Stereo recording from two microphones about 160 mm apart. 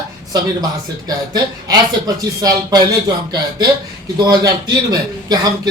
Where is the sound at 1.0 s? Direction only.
25° right (ahead or behind).